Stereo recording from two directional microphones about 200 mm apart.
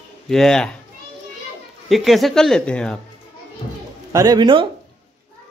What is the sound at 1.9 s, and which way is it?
A man's voice, centre (ahead or behind).